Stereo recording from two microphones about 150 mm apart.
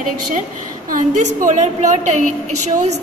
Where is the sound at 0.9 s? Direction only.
60° right (ahead or behind).